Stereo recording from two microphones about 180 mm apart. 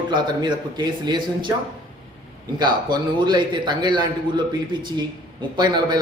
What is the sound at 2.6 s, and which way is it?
Speech, 25° right (ahead or behind).